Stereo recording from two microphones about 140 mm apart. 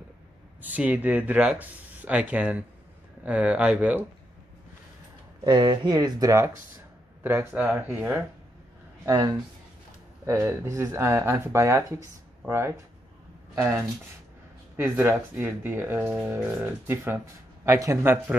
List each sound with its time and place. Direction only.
0.6 s speech: 10° right (ahead or behind)
5.4 s speech: 35° right (ahead or behind)
7.2 s speech: 10° right (ahead or behind)
9.0 s speech: 25° right (ahead or behind)